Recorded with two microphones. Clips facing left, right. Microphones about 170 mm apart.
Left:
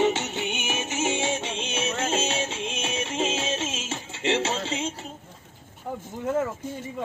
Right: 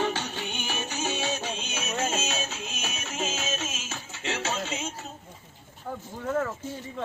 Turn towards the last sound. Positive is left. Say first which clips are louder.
# left 2 dB
turn(degrees=15)  # may be behind; listen again after turning